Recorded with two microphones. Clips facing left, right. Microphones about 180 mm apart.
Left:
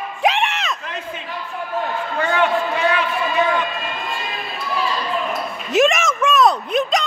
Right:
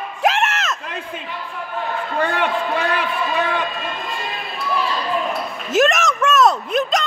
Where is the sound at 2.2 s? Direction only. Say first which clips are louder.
Left 3 dB; 60° right (ahead or behind).